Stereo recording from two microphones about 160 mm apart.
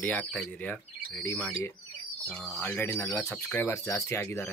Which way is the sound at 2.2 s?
10° left (ahead or behind).